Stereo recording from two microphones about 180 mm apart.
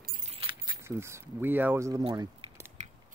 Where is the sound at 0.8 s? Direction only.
15° right (ahead or behind).